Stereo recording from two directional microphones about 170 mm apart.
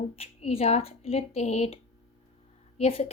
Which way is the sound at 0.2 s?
35° left (ahead or behind).